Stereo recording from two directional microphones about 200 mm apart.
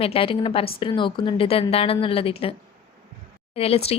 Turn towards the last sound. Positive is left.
turn(degrees=30)  # may be behind; listen again after turning